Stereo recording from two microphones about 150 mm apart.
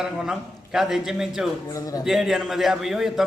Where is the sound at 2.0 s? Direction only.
Centre (ahead or behind).